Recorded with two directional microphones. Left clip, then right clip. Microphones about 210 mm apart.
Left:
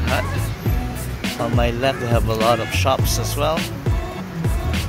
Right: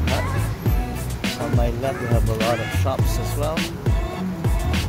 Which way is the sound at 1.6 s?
20° left (ahead or behind).